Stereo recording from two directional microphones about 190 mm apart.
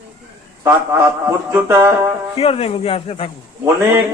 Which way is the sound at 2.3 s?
30° left (ahead or behind).